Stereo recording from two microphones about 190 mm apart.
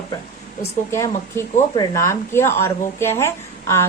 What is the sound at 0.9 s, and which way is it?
A woman's voice, 15° left (ahead or behind).